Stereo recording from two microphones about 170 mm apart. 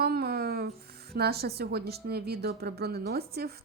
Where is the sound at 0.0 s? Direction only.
65° right (ahead or behind).